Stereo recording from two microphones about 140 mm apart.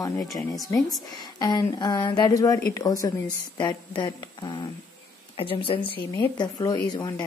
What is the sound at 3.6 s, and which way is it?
Speech, 30° left (ahead or behind).